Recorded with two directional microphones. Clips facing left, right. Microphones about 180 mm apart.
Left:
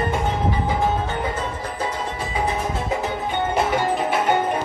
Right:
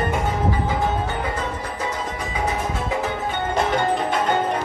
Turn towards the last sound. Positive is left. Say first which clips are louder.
# even
turn(degrees=10)  # may be behind; listen again after turning